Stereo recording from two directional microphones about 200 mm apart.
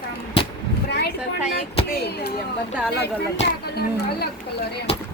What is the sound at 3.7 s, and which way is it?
Speech, 55° left (ahead or behind).